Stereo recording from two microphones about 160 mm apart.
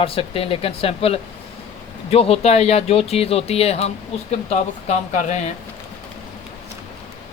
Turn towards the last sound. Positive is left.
turn(degrees=45)  # may be behind; listen again after turning